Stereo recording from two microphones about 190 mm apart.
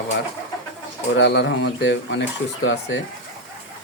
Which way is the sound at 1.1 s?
65° left (ahead or behind).